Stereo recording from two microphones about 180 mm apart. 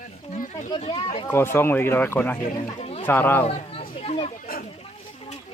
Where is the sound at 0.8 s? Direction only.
30° left (ahead or behind).